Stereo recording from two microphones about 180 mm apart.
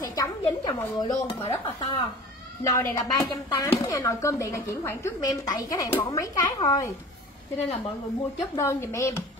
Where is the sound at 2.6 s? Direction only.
20° left (ahead or behind).